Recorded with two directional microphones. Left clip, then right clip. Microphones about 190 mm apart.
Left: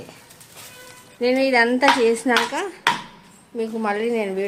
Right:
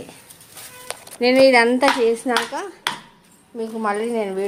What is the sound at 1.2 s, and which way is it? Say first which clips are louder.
Speech: right 4 dB; 30° right (ahead or behind).